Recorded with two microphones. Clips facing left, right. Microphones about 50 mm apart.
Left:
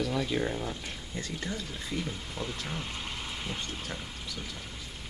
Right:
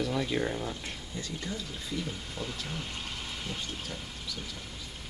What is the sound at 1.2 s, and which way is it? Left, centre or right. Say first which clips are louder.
Speech: left 2 dB; left.